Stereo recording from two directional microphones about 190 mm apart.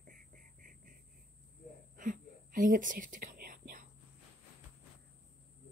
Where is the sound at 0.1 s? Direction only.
45° right (ahead or behind).